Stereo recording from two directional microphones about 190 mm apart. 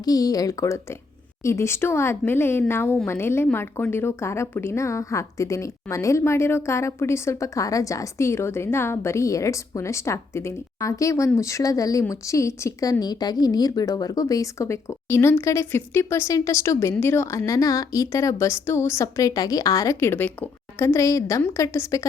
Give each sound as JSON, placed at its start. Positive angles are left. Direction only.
{"t": 0.0, "sound": "speech", "side_deg": 20}